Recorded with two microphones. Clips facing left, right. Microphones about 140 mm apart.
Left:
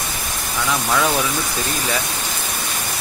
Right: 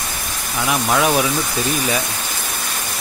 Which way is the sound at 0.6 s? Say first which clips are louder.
Right 2 dB; 15° right (ahead or behind).